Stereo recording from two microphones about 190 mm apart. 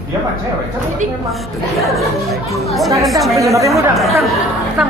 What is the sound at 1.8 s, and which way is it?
A woman's voice, centre (ahead or behind).